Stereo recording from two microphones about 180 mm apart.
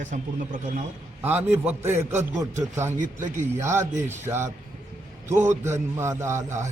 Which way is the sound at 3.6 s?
15° right (ahead or behind).